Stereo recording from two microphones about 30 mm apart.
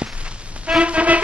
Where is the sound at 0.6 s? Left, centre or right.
Right.